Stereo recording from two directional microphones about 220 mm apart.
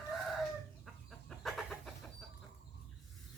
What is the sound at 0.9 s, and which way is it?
Chicken, centre (ahead or behind).